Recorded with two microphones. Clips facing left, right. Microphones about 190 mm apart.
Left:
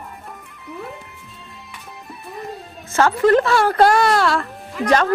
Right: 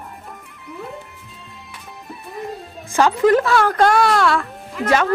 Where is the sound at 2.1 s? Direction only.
Centre (ahead or behind).